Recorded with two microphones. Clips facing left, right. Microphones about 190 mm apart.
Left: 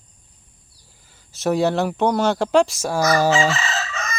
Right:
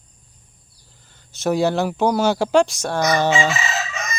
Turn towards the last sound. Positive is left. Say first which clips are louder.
# right 1 dB
turn(degrees=-15)  # may be behind; listen again after turning